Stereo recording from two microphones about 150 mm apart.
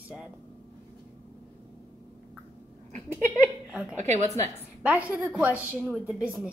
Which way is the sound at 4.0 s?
50° right (ahead or behind).